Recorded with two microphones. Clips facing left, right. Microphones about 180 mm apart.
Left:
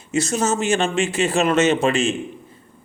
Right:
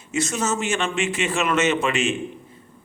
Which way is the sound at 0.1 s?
35° left (ahead or behind).